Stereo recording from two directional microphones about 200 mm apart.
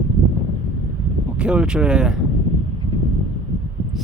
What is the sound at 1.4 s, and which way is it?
Speech, 5° right (ahead or behind).